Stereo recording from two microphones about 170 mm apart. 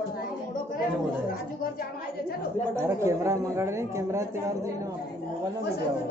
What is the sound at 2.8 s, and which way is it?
A woman's voice, 15° right (ahead or behind).